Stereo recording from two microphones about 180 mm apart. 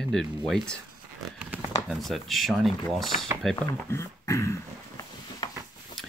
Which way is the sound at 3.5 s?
15° left (ahead or behind).